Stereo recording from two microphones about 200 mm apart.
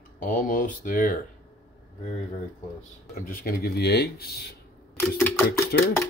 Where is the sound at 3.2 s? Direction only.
45° left (ahead or behind).